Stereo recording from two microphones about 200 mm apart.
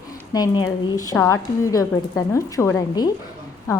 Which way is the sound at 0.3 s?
20° left (ahead or behind).